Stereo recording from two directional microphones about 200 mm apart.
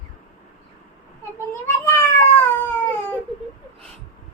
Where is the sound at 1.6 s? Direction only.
10° left (ahead or behind).